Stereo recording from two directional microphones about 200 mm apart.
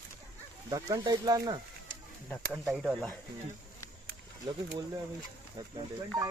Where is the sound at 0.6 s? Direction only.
20° right (ahead or behind).